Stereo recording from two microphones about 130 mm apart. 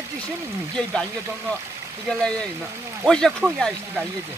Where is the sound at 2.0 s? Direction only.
5° left (ahead or behind).